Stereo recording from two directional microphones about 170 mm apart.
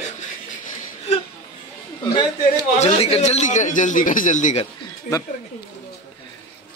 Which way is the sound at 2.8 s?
35° left (ahead or behind).